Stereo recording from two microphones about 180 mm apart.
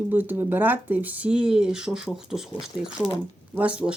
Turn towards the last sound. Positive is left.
turn(degrees=-5)  # may be behind; listen again after turning